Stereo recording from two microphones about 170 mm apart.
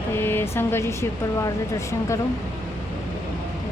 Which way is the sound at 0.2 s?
15° left (ahead or behind).